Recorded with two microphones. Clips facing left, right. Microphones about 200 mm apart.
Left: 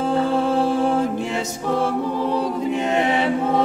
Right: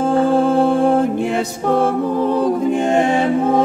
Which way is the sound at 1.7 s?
55° right (ahead or behind).